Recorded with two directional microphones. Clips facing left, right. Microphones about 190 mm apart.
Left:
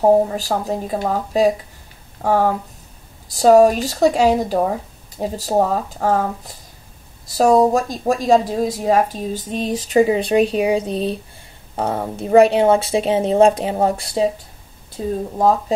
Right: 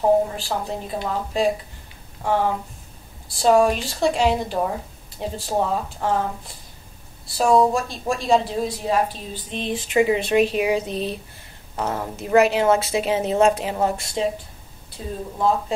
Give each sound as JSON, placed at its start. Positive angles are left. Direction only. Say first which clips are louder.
{"t": 0.0, "sound": "a woman's voice", "louder": "left 4 dB", "side_deg": 40}